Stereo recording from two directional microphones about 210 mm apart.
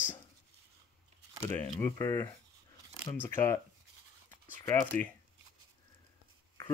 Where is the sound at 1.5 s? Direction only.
10° left (ahead or behind).